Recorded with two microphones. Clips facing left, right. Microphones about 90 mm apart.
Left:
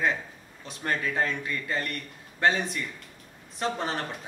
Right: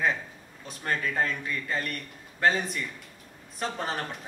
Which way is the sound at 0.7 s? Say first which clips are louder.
Left 1 dB; centre (ahead or behind).